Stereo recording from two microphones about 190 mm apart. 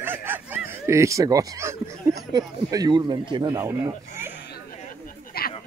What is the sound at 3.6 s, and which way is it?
Speech, 15° right (ahead or behind).